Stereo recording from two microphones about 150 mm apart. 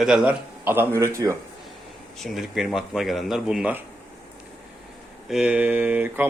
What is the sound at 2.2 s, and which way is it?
A man's voice, centre (ahead or behind).